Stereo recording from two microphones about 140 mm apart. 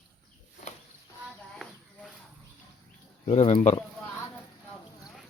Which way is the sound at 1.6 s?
Centre (ahead or behind).